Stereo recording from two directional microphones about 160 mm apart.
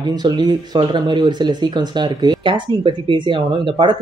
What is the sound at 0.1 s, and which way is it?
Speech, 25° right (ahead or behind).